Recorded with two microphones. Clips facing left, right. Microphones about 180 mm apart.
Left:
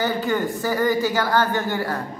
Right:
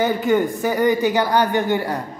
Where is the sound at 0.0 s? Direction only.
20° right (ahead or behind).